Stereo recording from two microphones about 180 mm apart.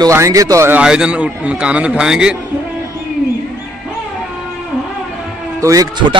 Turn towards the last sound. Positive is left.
turn(degrees=-20)  # may be behind; listen again after turning